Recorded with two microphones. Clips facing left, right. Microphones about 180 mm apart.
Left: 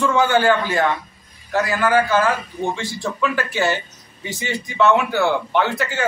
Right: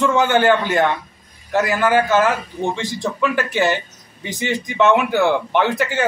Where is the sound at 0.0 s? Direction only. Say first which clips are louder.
Right 1 dB; 20° right (ahead or behind).